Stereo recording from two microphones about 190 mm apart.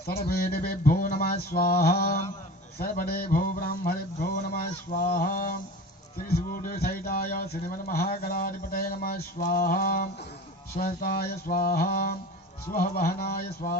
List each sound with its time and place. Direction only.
0.0 s speech: 55° left (ahead or behind)